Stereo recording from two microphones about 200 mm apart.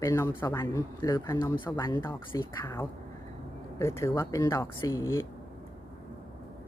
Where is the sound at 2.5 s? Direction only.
10° left (ahead or behind).